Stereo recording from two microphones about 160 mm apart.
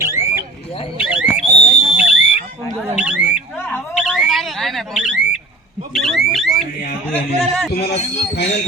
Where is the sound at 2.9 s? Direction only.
5° right (ahead or behind).